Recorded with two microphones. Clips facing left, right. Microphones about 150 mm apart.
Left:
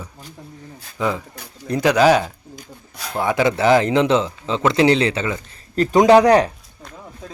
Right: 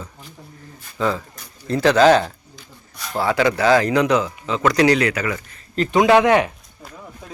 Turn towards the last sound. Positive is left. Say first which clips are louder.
# left 3 dB
turn(degrees=35)  # may be behind; listen again after turning